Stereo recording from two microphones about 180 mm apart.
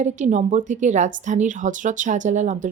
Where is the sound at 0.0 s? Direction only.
40° right (ahead or behind).